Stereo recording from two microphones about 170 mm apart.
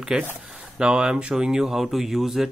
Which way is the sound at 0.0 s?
5° right (ahead or behind).